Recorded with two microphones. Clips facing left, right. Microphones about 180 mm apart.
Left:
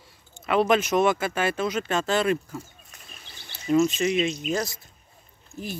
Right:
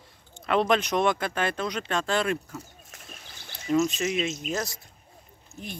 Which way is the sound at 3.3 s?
45° right (ahead or behind).